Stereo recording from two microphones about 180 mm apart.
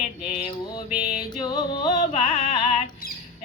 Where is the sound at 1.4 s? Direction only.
25° left (ahead or behind).